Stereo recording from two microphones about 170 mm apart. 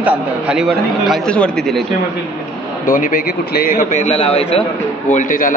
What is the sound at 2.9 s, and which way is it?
A man's voice, 50° left (ahead or behind).